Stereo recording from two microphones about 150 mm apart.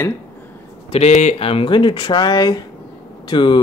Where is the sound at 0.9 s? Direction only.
50° left (ahead or behind).